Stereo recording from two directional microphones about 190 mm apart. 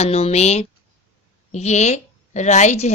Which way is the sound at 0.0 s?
35° left (ahead or behind).